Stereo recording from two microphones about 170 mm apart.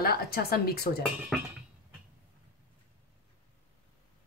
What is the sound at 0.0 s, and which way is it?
A woman's voice, 65° left (ahead or behind).